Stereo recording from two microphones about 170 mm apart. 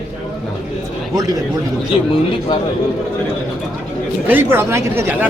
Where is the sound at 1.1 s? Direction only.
20° right (ahead or behind).